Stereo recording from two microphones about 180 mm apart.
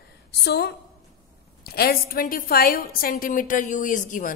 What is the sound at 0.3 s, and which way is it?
A woman's voice, 65° left (ahead or behind).